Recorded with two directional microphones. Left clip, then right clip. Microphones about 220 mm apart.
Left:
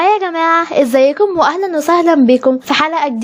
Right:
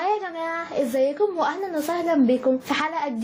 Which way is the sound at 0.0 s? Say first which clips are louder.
Left 13 dB; 35° left (ahead or behind).